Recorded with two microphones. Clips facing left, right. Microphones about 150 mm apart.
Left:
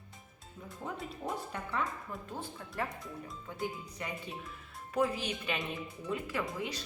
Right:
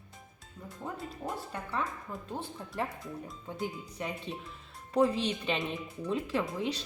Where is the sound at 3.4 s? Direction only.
20° right (ahead or behind).